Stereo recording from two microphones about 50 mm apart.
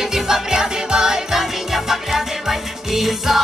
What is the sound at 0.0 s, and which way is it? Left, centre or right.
Music, centre.